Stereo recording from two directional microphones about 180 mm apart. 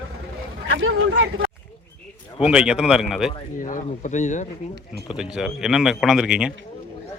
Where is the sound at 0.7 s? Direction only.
90° right.